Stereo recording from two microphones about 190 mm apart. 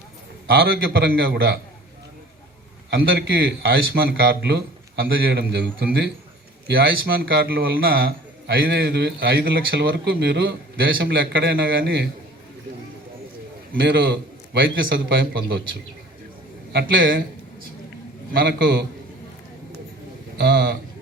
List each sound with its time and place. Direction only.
0.5 s a man's voice: 55° right (ahead or behind)
3.0 s a man's voice: 55° right (ahead or behind)
13.7 s a man's voice: 65° right (ahead or behind)
16.7 s a man's voice: 70° right (ahead or behind)
18.3 s a man's voice: 60° right (ahead or behind)
20.4 s a man's voice: 60° right (ahead or behind)